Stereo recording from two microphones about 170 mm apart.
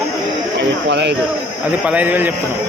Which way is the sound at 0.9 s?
90° right.